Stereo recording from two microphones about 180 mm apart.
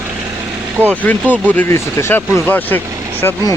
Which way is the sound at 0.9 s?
10° left (ahead or behind).